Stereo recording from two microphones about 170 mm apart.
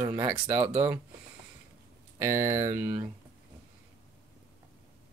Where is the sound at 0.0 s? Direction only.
10° right (ahead or behind).